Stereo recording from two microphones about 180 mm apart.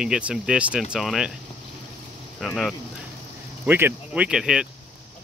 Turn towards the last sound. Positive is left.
turn(degrees=-5)  # may be behind; listen again after turning